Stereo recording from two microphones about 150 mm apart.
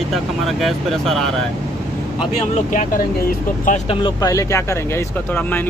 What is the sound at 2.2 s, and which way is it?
Speech, 45° left (ahead or behind).